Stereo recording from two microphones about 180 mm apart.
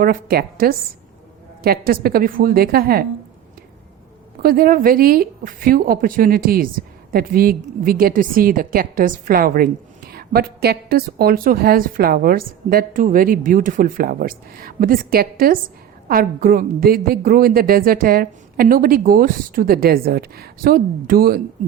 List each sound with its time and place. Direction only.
0.0 s a woman's voice: 55° right (ahead or behind)
4.4 s a woman's voice: 55° right (ahead or behind)